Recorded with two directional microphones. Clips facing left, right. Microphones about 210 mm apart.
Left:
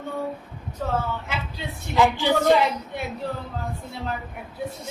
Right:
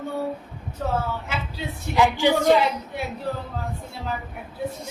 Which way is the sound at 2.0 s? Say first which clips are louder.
Right 1 dB; 15° right (ahead or behind).